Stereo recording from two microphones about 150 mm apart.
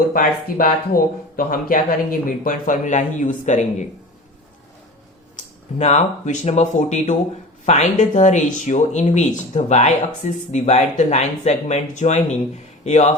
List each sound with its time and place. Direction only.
0.1 s a man's voice: 70° left (ahead or behind); by 3.8 s 50° left (ahead or behind)
5.8 s speech: 50° left (ahead or behind)